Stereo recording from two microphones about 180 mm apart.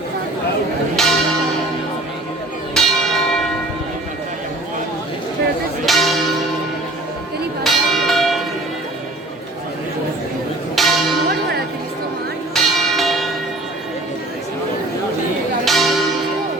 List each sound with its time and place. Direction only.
1.0 s church bell: centre (ahead or behind)
2.7 s church bell: centre (ahead or behind)
5.8 s church bell: centre (ahead or behind)
7.6 s church bell: centre (ahead or behind)
10.8 s church bell: centre (ahead or behind)
12.5 s church bell: centre (ahead or behind)
15.6 s church bell: centre (ahead or behind)